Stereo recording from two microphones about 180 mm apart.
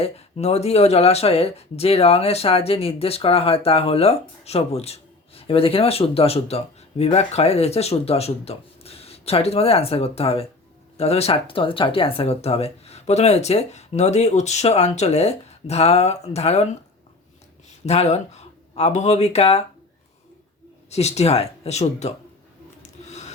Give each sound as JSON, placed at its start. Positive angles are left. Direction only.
{"t": 0.0, "sound": "speech", "side_deg": 35}
{"t": 17.8, "sound": "speech", "side_deg": 35}
{"t": 20.9, "sound": "speech", "side_deg": 35}
{"t": 22.8, "sound": "a sound", "side_deg": 40}